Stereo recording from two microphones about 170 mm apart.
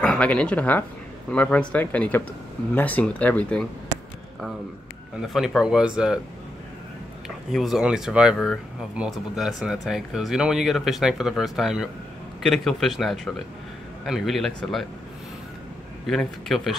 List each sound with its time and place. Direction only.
0.0 s speech: 5° left (ahead or behind)
5.3 s speech: centre (ahead or behind)
7.2 s speech: centre (ahead or behind)
16.1 s speech: centre (ahead or behind)